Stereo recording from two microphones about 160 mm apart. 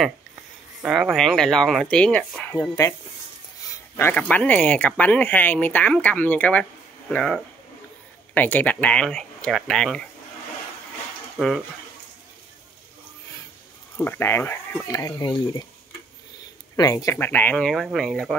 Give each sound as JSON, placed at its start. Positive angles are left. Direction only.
{"t": 0.8, "sound": "speech", "side_deg": -5}
{"t": 3.9, "sound": "speech", "side_deg": 10}
{"t": 11.3, "sound": "speech", "side_deg": 0}
{"t": 13.9, "sound": "speech", "side_deg": 15}
{"t": 16.7, "sound": "speech", "side_deg": 25}